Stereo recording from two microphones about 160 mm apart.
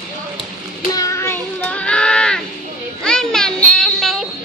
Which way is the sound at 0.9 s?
20° left (ahead or behind).